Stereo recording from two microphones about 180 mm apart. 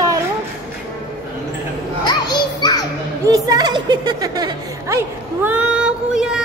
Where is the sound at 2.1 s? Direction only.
25° left (ahead or behind).